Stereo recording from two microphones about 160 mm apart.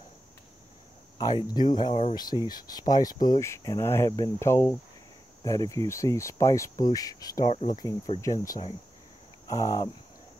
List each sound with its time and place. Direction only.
1.1 s speech: 25° left (ahead or behind)